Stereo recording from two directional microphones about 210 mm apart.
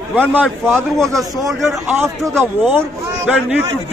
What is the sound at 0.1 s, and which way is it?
A man's voice, 10° right (ahead or behind).